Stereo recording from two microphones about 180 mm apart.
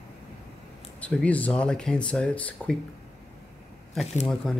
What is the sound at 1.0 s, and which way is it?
Speech, 5° left (ahead or behind).